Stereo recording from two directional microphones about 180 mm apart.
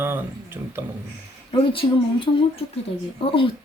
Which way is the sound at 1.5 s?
30° left (ahead or behind).